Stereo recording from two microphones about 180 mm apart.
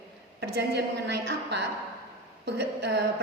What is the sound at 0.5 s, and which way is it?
A woman's voice, 65° right (ahead or behind).